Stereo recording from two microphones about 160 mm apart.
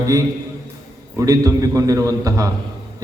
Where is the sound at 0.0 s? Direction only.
20° right (ahead or behind).